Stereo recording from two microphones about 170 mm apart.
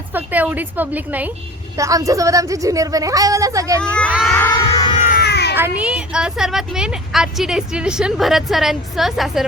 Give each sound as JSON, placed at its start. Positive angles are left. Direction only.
{"t": 0.1, "sound": "a woman's voice", "side_deg": -10}
{"t": 1.8, "sound": "a woman's voice", "side_deg": -20}
{"t": 3.8, "sound": "speech", "side_deg": 5}
{"t": 4.4, "sound": "music", "side_deg": 15}
{"t": 5.1, "sound": "baby cry", "side_deg": 75}
{"t": 5.5, "sound": "speech", "side_deg": -10}